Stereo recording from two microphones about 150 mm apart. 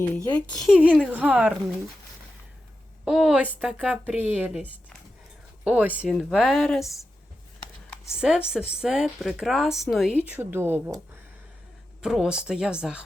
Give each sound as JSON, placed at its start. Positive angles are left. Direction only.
{"t": 0.6, "sound": "a woman's voice", "side_deg": -5}
{"t": 3.0, "sound": "a woman's voice", "side_deg": -5}
{"t": 8.2, "sound": "a woman's voice", "side_deg": -5}
{"t": 12.0, "sound": "speech", "side_deg": -5}